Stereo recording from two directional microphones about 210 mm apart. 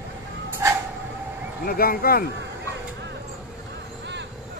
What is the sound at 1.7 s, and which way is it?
Speech, 45° left (ahead or behind).